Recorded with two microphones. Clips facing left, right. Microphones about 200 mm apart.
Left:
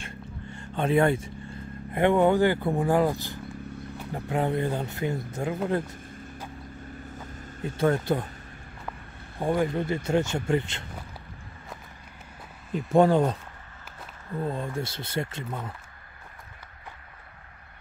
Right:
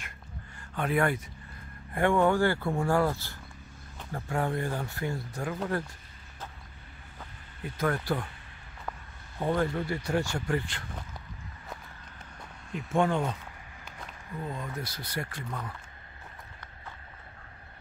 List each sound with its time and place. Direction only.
0.0 s a sound: 25° left (ahead or behind)
1.9 s speech: 20° left (ahead or behind)
7.6 s speech: 25° left (ahead or behind)
9.4 s speech: 15° left (ahead or behind)
12.7 s speech: 35° left (ahead or behind)
14.4 s speech: 30° left (ahead or behind)